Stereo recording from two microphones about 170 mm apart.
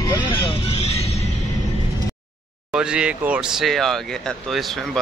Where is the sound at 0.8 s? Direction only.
35° left (ahead or behind).